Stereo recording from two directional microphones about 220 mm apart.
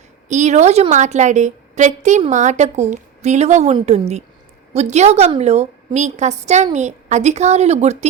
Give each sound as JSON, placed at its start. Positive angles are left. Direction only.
{"t": 0.3, "sound": "a woman's voice", "side_deg": -30}